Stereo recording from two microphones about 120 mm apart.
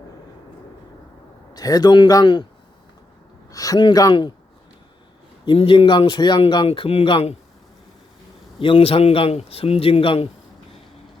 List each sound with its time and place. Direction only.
1.5 s speech: 30° left (ahead or behind)
3.5 s speech: 30° left (ahead or behind)
5.5 s speech: 45° left (ahead or behind)
6.7 s speech: 55° left (ahead or behind)
8.5 s speech: 45° left (ahead or behind)